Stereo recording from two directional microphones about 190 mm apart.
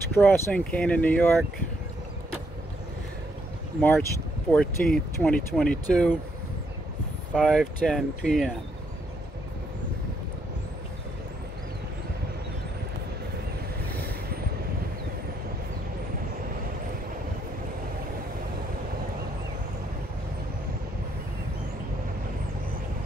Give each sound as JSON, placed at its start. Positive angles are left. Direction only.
{"t": 0.1, "sound": "speech", "side_deg": 10}
{"t": 4.5, "sound": "speech", "side_deg": 5}
{"t": 7.3, "sound": "speech", "side_deg": 5}